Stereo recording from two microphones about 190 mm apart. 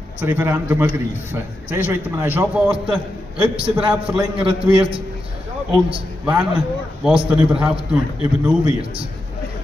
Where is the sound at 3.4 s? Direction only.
30° right (ahead or behind).